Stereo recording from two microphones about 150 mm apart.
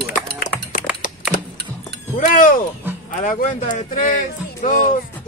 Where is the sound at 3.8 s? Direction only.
60° left (ahead or behind).